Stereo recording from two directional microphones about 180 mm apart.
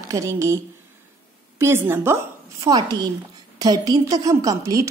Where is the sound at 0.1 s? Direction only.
15° right (ahead or behind).